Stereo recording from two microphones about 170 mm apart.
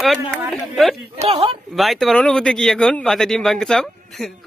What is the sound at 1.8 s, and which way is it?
Speech, centre (ahead or behind).